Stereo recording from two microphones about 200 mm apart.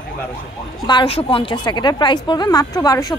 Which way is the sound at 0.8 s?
25° left (ahead or behind).